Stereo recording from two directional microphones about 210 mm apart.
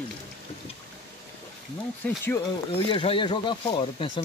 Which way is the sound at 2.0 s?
5° left (ahead or behind).